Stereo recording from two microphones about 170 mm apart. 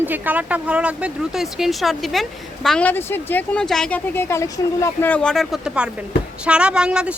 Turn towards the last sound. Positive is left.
turn(degrees=-5)  # may be behind; listen again after turning